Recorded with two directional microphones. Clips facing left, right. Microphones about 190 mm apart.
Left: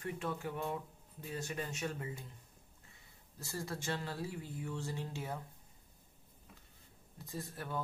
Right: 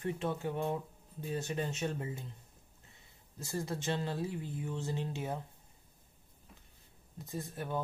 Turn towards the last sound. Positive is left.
turn(degrees=-20)  # may be behind; listen again after turning